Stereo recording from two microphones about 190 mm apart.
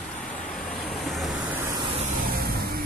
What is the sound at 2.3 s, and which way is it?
Vehicle, 50° right (ahead or behind).